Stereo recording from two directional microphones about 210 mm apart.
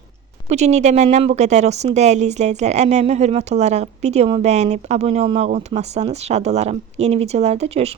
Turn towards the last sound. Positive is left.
turn(degrees=-30)  # may be behind; listen again after turning